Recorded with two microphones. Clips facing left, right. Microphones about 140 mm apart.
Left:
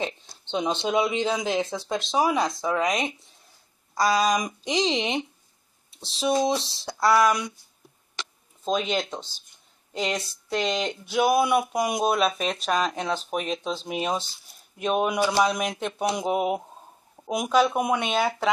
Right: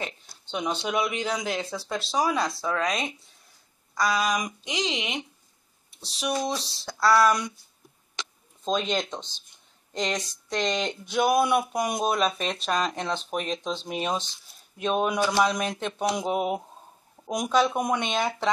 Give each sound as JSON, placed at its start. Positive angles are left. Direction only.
{"t": 0.0, "sound": "speech", "side_deg": 25}
{"t": 3.9, "sound": "speech", "side_deg": 30}
{"t": 8.6, "sound": "speech", "side_deg": 5}